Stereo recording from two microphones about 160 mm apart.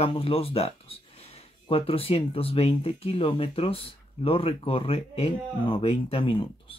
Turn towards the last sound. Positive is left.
turn(degrees=35)  # may be behind; listen again after turning